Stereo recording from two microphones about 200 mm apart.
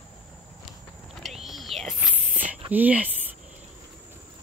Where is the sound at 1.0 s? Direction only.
Centre (ahead or behind).